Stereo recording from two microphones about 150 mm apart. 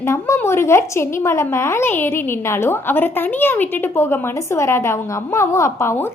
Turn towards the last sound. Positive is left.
turn(degrees=15)  # may be behind; listen again after turning